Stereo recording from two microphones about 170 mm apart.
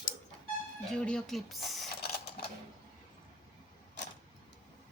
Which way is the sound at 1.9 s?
65° left (ahead or behind).